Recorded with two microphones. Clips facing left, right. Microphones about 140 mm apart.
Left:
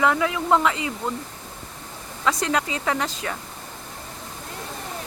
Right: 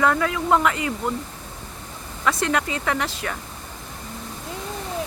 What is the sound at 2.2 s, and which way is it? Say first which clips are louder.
Speech: right 1 dB; 20° left (ahead or behind).